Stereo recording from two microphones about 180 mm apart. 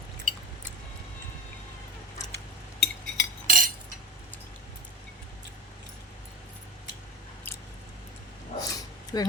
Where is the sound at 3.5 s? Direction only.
50° right (ahead or behind).